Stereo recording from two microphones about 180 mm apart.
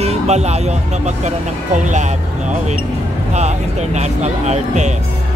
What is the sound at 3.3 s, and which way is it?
Speech, 40° right (ahead or behind).